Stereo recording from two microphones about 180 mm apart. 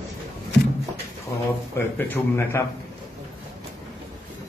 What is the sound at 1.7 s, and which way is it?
Speech, 10° left (ahead or behind).